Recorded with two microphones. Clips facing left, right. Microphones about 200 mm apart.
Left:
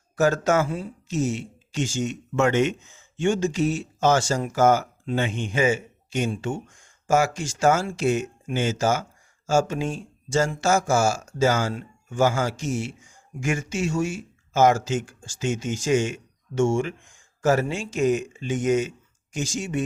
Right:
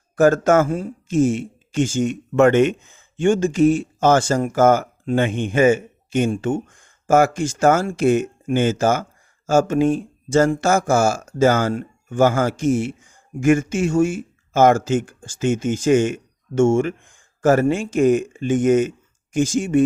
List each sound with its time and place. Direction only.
0.2 s speech: 50° right (ahead or behind)